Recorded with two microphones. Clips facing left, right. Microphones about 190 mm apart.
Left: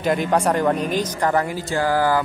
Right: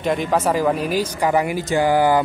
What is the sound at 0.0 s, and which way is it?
Speech, centre (ahead or behind).